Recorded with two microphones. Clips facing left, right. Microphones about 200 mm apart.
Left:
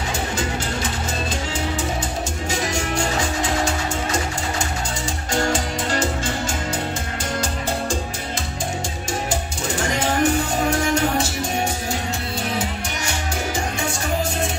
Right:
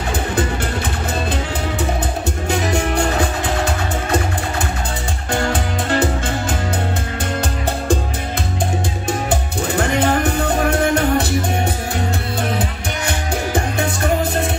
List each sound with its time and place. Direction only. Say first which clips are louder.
2.7 s music: right 5 dB; 60° right (ahead or behind)
5.3 s music: right 2 dB; 60° right (ahead or behind)
9.3 s music: right 5 dB; 60° right (ahead or behind)